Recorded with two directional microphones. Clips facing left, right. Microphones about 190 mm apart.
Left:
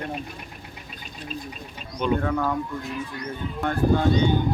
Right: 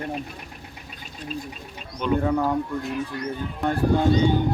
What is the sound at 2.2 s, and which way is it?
Speech, 20° right (ahead or behind).